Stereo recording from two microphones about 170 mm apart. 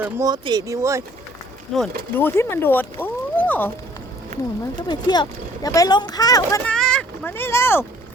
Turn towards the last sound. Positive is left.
turn(degrees=15)  # may be behind; listen again after turning